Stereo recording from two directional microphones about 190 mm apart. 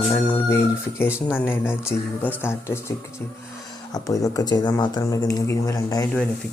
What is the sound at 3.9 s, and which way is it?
Speech, 20° left (ahead or behind).